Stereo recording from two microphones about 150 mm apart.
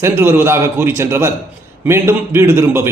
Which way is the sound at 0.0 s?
15° right (ahead or behind).